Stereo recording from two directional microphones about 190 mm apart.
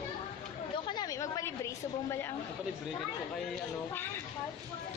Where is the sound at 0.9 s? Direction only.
20° left (ahead or behind).